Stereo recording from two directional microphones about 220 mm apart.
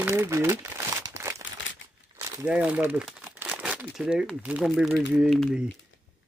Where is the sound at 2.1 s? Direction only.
5° right (ahead or behind).